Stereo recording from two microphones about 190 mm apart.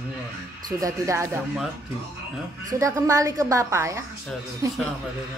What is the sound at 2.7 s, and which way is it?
A woman's voice, 15° right (ahead or behind).